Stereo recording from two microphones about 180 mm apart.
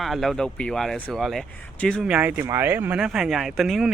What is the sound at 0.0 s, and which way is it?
Speech, centre (ahead or behind).